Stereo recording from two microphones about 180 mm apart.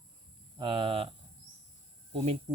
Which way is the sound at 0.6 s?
30° right (ahead or behind).